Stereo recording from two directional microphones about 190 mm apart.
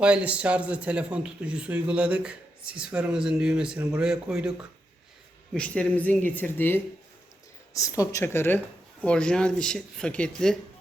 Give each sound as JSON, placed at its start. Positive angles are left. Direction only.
{"t": 0.0, "sound": "speech", "side_deg": -5}
{"t": 5.5, "sound": "a woman's voice", "side_deg": 5}